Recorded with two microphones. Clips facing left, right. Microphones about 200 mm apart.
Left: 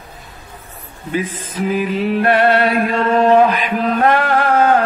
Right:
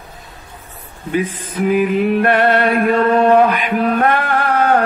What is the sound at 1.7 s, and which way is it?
Mantra, 50° right (ahead or behind).